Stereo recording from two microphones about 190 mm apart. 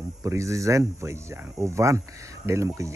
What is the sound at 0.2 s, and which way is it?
Speech, 15° right (ahead or behind).